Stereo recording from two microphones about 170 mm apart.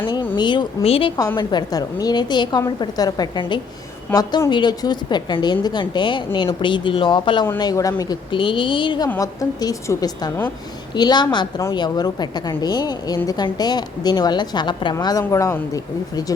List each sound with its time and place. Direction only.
0.3 s a woman's voice: 25° left (ahead or behind)